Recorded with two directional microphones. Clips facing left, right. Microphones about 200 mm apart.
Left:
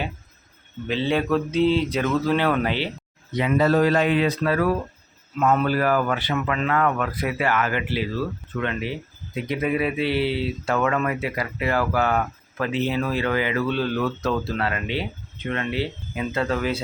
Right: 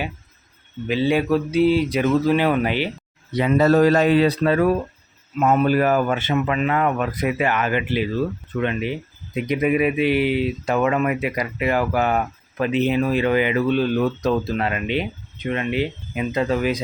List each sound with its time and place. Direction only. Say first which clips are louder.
0.9 s speech: right 3 dB; 10° right (ahead or behind)
3.3 s speech: right 3 dB; 40° right (ahead or behind); by 16.8 s 15° right (ahead or behind)